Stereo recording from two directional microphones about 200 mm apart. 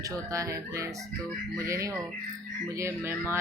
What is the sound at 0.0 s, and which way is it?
Speech, 15° right (ahead or behind).